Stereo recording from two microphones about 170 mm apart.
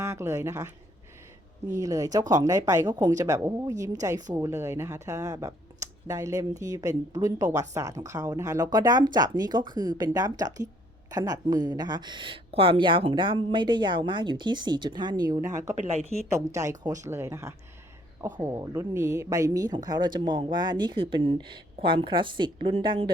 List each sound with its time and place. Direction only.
0.0 s speech: 15° right (ahead or behind)
1.8 s speech: 20° right (ahead or behind)